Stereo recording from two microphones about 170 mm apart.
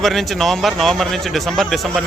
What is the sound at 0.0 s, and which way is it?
A man's voice, centre (ahead or behind).